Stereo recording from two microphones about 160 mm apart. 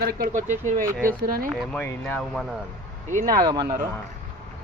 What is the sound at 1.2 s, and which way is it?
Speech, 65° right (ahead or behind).